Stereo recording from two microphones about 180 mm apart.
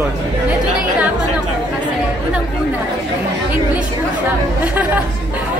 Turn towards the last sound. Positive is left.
turn(degrees=-10)  # may be behind; listen again after turning